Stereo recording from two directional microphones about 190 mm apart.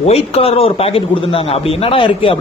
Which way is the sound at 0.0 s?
30° left (ahead or behind).